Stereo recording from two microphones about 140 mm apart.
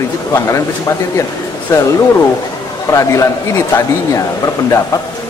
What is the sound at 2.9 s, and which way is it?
Speech, 20° left (ahead or behind).